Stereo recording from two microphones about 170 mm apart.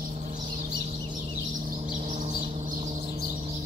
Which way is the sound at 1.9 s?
50° right (ahead or behind).